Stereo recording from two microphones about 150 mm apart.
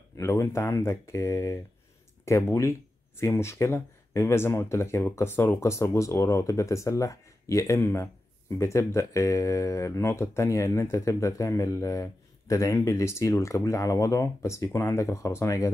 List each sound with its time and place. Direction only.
0.2 s speech: 20° left (ahead or behind)